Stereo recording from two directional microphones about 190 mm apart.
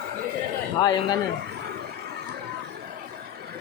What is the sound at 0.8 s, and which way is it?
Speech, 20° left (ahead or behind).